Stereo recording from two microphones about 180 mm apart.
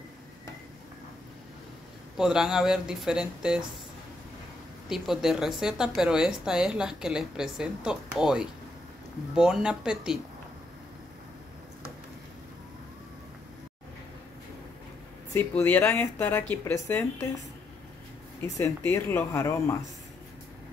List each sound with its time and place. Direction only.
2.1 s a woman's voice: 5° right (ahead or behind)
4.8 s a woman's voice: centre (ahead or behind)
15.3 s speech: 10° left (ahead or behind)
18.4 s speech: 10° left (ahead or behind)